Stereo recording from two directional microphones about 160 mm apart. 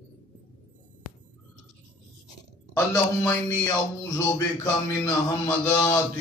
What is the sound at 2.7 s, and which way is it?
Speech, 15° left (ahead or behind).